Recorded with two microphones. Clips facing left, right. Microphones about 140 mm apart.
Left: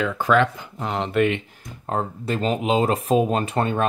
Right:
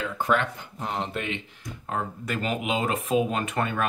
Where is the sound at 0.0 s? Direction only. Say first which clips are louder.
Left 6 dB; 90° left; by 1.4 s 65° left (ahead or behind).